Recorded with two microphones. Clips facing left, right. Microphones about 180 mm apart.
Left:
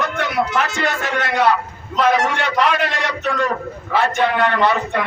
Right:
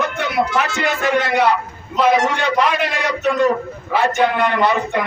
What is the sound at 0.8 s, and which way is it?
A man's voice, 15° right (ahead or behind).